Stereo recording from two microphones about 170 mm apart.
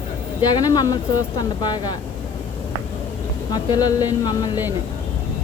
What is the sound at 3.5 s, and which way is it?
Speech, 25° left (ahead or behind).